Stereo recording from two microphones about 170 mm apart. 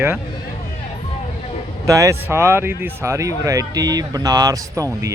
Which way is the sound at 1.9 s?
20° right (ahead or behind).